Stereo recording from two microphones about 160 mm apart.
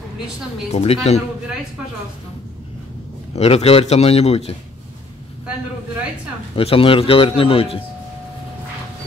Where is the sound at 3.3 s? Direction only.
40° left (ahead or behind).